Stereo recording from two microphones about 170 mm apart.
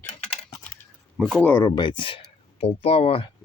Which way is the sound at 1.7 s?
30° left (ahead or behind).